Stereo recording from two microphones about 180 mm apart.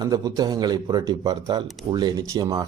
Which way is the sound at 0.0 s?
20° right (ahead or behind).